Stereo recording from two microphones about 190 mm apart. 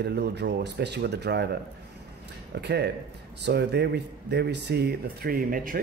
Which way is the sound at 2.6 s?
60° right (ahead or behind).